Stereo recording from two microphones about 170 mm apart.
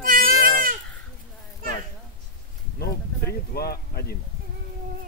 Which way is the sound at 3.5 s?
65° left (ahead or behind).